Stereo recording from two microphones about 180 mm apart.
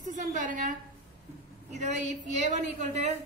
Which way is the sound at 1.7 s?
40° right (ahead or behind).